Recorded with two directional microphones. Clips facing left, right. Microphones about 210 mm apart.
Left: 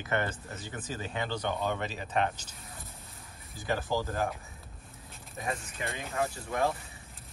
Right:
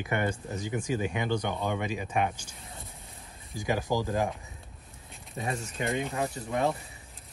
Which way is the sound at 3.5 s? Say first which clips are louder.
Right 3 dB; 15° right (ahead or behind).